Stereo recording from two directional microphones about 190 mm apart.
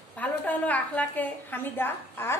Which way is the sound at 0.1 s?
10° left (ahead or behind).